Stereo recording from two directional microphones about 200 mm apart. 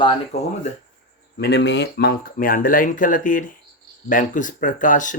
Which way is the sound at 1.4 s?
55° left (ahead or behind).